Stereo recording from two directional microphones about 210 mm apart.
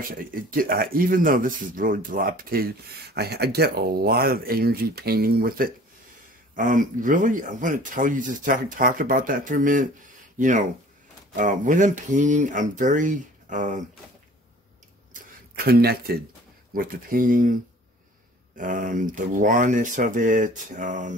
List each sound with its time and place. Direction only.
0.0 s speech: 40° right (ahead or behind)
15.1 s a sound: 50° right (ahead or behind)
16.7 s speech: 45° right (ahead or behind)
18.6 s speech: 40° right (ahead or behind)